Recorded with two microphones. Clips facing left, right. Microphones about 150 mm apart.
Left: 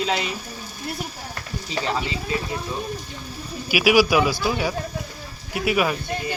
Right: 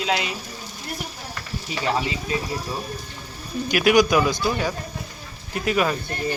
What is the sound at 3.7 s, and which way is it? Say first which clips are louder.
Speech: even; 5° left (ahead or behind).